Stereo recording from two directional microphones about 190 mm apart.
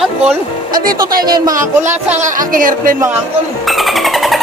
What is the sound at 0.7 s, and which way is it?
Speech, 50° right (ahead or behind).